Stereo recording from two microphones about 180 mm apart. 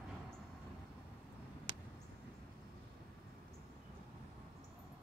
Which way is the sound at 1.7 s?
25° right (ahead or behind).